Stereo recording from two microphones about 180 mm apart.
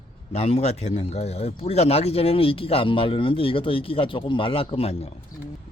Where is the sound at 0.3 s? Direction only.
35° left (ahead or behind).